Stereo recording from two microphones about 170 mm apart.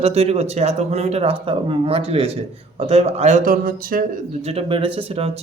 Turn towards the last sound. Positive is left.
turn(degrees=-35)  # may be behind; listen again after turning